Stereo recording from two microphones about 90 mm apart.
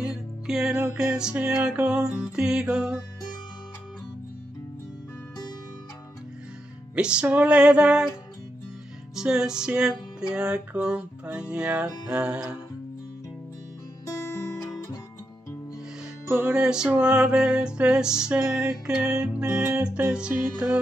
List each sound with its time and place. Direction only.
0.1 s music: 5° right (ahead or behind)
7.0 s music: 10° right (ahead or behind)
9.1 s music: 5° right (ahead or behind)
14.0 s guitar: 35° left (ahead or behind)
16.4 s music: 10° right (ahead or behind)